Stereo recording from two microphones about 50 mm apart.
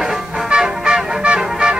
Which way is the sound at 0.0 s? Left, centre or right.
Centre.